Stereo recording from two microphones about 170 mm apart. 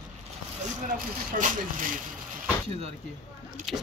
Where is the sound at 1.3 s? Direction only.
55° right (ahead or behind).